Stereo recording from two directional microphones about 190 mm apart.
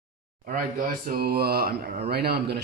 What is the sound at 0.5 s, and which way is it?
Speech, 45° right (ahead or behind).